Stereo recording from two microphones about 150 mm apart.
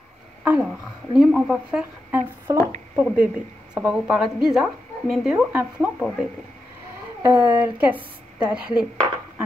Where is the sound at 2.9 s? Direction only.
10° right (ahead or behind).